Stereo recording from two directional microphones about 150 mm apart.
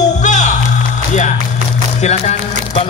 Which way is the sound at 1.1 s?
55° left (ahead or behind).